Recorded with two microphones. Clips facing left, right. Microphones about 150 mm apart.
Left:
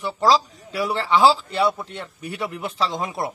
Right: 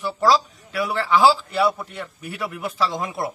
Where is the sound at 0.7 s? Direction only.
25° left (ahead or behind).